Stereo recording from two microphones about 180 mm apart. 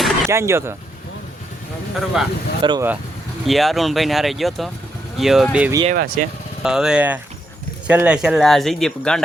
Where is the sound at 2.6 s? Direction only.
25° right (ahead or behind).